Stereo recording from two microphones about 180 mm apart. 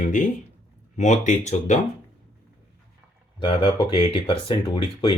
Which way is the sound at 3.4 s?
25° left (ahead or behind).